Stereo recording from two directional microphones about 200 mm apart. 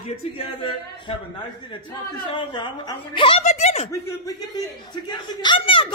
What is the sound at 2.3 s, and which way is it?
Speech, 25° left (ahead or behind).